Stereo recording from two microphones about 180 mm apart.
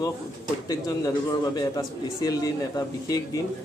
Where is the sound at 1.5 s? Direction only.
20° left (ahead or behind).